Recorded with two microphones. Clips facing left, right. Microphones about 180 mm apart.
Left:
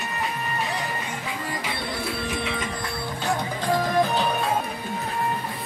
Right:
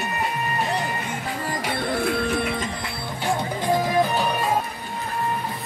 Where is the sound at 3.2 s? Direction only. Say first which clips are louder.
Right 3 dB; 15° right (ahead or behind).